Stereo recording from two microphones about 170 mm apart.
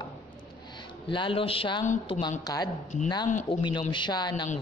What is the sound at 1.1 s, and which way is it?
A man's voice, 30° left (ahead or behind).